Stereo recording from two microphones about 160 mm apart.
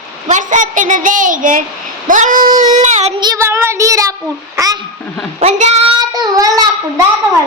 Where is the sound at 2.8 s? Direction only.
45° right (ahead or behind).